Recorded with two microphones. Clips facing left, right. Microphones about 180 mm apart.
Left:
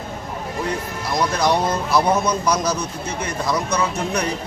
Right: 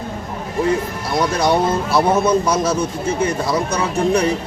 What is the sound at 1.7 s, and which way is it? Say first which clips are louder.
A man's voice: right 2 dB; 30° right (ahead or behind).